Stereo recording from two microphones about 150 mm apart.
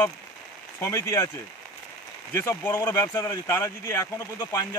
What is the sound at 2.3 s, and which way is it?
Speech, 15° left (ahead or behind).